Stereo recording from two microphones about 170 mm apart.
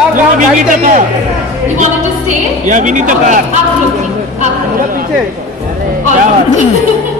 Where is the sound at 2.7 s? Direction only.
50° right (ahead or behind).